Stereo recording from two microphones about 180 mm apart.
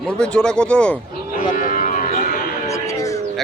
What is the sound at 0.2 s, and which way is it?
Speech, 5° left (ahead or behind).